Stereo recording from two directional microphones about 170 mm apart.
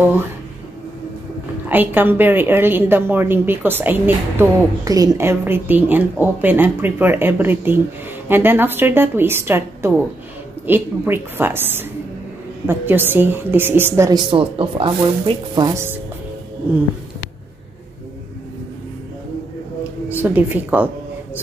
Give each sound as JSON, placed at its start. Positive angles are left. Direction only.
{"t": 1.7, "sound": "a woman's voice", "side_deg": -10}
{"t": 14.3, "sound": "speech", "side_deg": -30}
{"t": 15.7, "sound": "a woman's voice", "side_deg": -15}
{"t": 20.1, "sound": "a woman's voice", "side_deg": -10}